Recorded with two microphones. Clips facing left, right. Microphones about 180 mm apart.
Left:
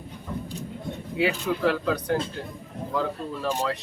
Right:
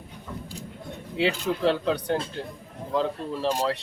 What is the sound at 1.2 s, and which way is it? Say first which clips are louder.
Speech: even; 25° right (ahead or behind).